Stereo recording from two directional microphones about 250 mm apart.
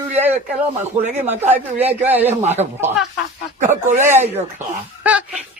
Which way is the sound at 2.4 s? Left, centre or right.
Right.